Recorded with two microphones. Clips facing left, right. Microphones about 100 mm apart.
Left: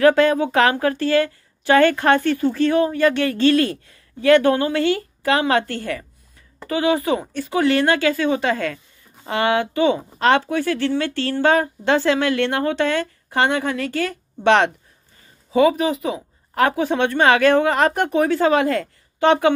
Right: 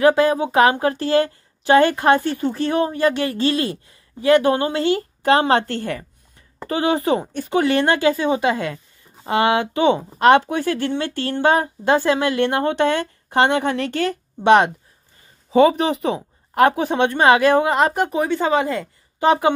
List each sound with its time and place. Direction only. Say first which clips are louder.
0.0 s a woman's voice: left 1 dB; 15° right (ahead or behind)
15.5 s speech: right 2 dB; 30° right (ahead or behind)
16.6 s a woman's voice: right 2 dB; 20° right (ahead or behind); by 18.9 s 5° right (ahead or behind)